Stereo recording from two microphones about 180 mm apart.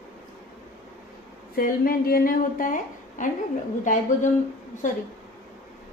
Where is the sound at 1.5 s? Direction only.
55° left (ahead or behind).